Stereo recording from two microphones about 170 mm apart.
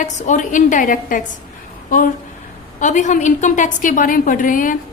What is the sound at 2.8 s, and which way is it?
A woman's voice, 45° left (ahead or behind).